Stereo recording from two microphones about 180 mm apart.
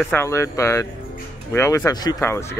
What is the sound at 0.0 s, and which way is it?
Speech, 10° left (ahead or behind).